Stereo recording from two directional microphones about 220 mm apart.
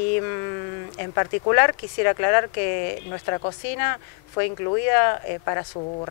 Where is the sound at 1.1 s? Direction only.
20° left (ahead or behind).